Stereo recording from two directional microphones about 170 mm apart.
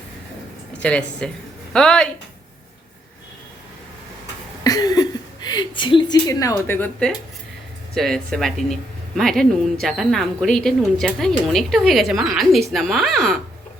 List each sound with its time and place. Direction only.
0.8 s speech: 5° left (ahead or behind)
4.6 s speech: 20° left (ahead or behind); by 13.4 s centre (ahead or behind)